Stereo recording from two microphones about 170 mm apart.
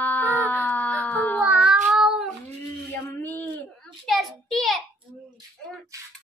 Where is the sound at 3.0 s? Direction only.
10° left (ahead or behind).